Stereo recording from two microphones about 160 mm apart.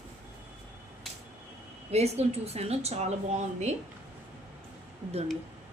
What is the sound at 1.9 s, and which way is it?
Speech, 40° right (ahead or behind).